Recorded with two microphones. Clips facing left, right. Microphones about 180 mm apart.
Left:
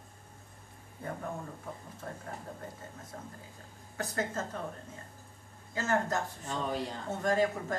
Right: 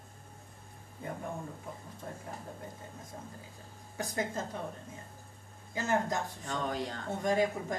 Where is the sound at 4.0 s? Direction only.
15° right (ahead or behind).